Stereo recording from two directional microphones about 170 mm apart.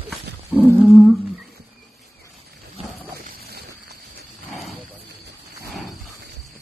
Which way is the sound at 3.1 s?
65° right (ahead or behind).